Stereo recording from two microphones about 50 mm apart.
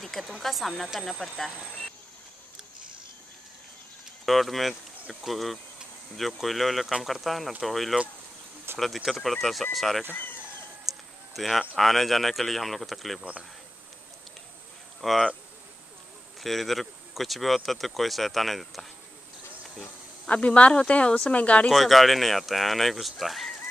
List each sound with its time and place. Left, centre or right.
0.0 s speech: centre
4.3 s speech: centre
10.1 s a sound: left
10.9 s a sound: centre
11.3 s speech: centre
15.0 s speech: centre
16.3 s speech: centre
19.8 s speech: left
21.6 s speech: centre